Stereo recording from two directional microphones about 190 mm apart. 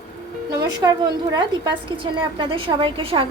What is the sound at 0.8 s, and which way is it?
A woman's voice, 20° right (ahead or behind).